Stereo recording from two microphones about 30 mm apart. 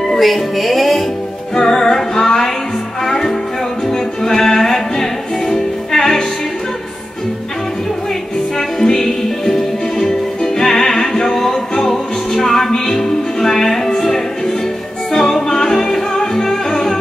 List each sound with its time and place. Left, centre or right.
0.2 s music: centre
1.5 s music: centre
8.5 s music: centre